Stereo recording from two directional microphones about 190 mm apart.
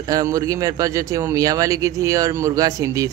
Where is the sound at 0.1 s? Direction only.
20° right (ahead or behind).